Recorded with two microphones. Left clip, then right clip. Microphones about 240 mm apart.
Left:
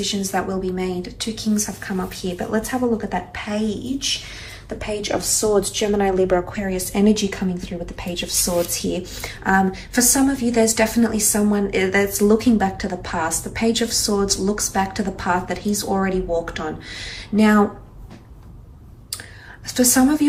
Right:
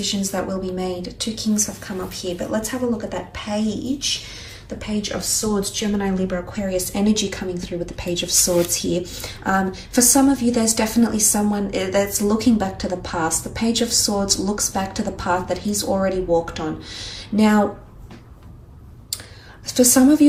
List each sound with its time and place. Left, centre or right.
0.0 s a woman's voice: centre
4.8 s a woman's voice: centre
6.7 s a woman's voice: centre
19.6 s a woman's voice: centre